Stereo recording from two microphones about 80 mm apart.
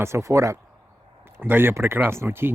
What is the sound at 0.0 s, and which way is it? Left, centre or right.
Speech, right.